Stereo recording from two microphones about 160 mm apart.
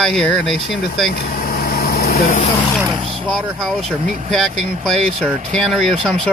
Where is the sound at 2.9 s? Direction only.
35° right (ahead or behind).